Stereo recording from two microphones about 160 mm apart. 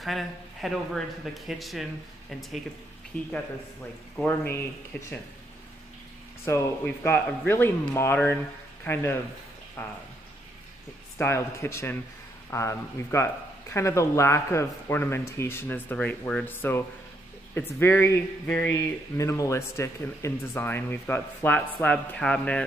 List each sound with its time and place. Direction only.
0.0 s speech: centre (ahead or behind)
4.2 s speech: 15° left (ahead or behind)
6.4 s speech: 15° left (ahead or behind)
11.1 s speech: 15° left (ahead or behind)